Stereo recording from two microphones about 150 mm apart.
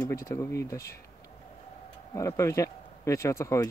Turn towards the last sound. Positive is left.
turn(degrees=20)  # may be behind; listen again after turning